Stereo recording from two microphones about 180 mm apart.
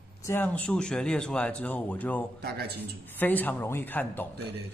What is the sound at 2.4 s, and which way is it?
Speech, 65° right (ahead or behind).